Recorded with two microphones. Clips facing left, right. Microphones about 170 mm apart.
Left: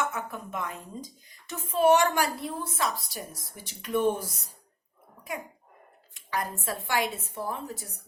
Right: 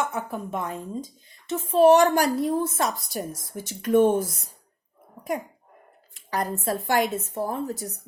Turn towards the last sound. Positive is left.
turn(degrees=-40)  # may be behind; listen again after turning